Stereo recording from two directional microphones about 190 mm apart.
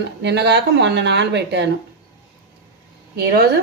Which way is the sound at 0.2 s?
65° right (ahead or behind).